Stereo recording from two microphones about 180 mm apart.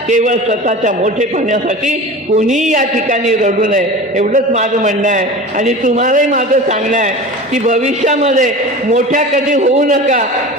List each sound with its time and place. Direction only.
0.1 s a man's voice: 45° right (ahead or behind)